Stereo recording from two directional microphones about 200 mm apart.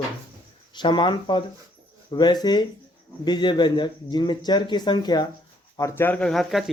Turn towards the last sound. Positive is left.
turn(degrees=0)  # may be behind; listen again after turning